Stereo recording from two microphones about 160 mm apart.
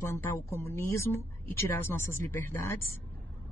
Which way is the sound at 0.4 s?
15° left (ahead or behind).